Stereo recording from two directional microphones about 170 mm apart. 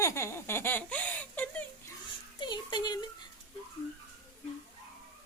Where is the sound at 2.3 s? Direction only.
25° left (ahead or behind).